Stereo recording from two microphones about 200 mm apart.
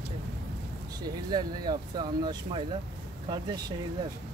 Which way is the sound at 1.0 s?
20° right (ahead or behind).